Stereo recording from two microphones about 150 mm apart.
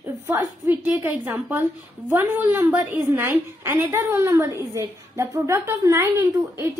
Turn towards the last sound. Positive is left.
turn(degrees=-15)  # may be behind; listen again after turning